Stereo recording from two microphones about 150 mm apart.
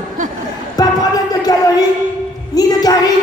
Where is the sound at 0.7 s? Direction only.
25° left (ahead or behind).